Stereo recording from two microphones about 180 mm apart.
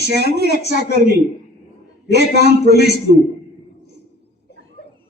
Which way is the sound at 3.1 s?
60° right (ahead or behind).